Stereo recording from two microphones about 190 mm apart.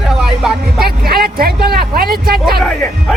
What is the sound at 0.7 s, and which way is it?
Speech, 55° right (ahead or behind).